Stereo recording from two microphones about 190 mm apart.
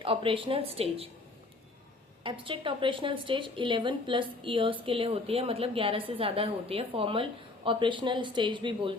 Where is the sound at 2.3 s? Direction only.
25° right (ahead or behind).